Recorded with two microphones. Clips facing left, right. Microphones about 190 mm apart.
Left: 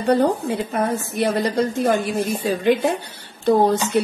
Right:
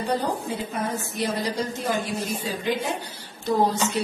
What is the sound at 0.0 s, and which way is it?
A woman's voice, 60° left (ahead or behind).